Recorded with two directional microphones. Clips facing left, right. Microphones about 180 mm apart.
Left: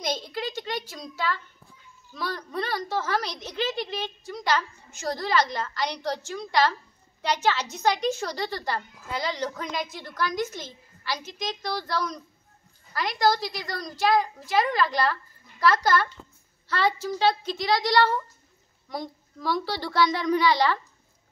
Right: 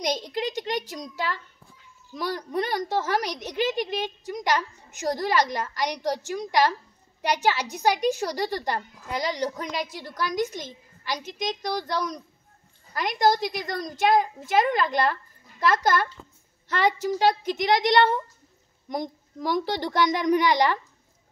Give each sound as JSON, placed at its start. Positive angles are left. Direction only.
{"t": 0.0, "sound": "a child's voice", "side_deg": -15}